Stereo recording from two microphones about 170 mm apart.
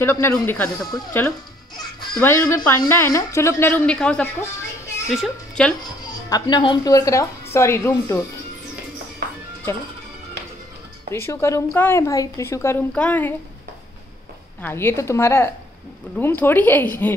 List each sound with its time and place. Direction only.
0.0 s a woman's voice: 15° left (ahead or behind)
6.2 s speech: 25° left (ahead or behind)
11.1 s a woman's voice: 15° left (ahead or behind)
14.6 s a woman's voice: 15° left (ahead or behind)